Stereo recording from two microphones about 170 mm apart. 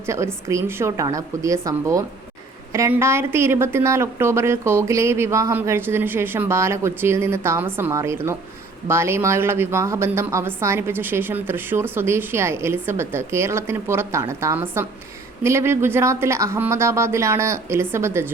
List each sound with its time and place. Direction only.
0.0 s a woman's voice: 15° right (ahead or behind)